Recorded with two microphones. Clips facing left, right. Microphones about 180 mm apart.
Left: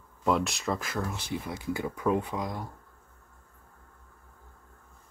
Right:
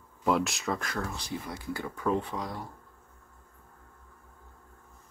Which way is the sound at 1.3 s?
20° left (ahead or behind).